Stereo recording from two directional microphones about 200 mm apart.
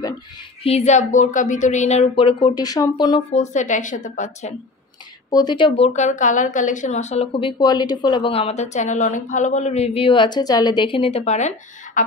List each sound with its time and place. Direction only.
0.7 s a woman's voice: 35° left (ahead or behind)
3.3 s a woman's voice: 40° left (ahead or behind)
5.3 s speech: 20° left (ahead or behind)
5.9 s a woman's voice: 40° left (ahead or behind)